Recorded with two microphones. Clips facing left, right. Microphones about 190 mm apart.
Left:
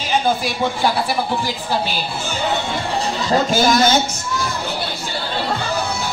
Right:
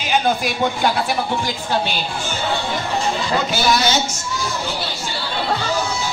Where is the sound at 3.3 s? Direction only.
45° left (ahead or behind).